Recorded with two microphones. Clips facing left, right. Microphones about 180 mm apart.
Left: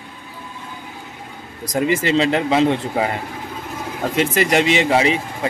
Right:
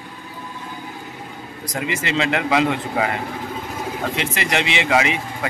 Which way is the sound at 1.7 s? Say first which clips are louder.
Left 6 dB; 40° left (ahead or behind).